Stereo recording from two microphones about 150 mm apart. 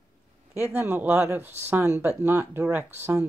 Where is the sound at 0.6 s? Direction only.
15° right (ahead or behind).